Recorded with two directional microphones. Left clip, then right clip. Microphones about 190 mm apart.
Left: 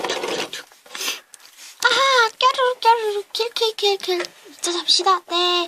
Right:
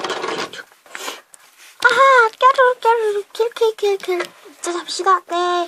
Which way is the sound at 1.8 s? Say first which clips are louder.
Right 5 dB; 40° left (ahead or behind).